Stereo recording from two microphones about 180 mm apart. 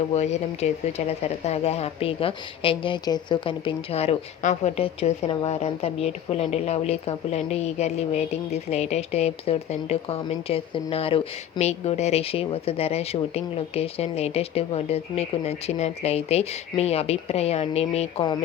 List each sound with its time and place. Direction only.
0.1 s speech: 40° left (ahead or behind)